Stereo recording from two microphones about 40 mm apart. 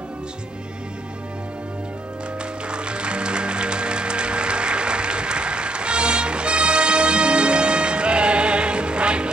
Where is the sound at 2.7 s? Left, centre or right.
Right.